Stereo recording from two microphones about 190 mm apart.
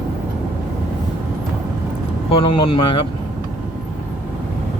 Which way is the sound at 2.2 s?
25° left (ahead or behind).